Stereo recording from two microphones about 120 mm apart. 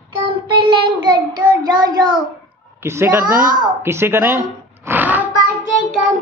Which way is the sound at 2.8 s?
20° right (ahead or behind).